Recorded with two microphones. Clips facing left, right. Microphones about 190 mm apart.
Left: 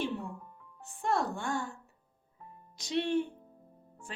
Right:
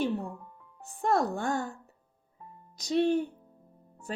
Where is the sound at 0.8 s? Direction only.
40° right (ahead or behind).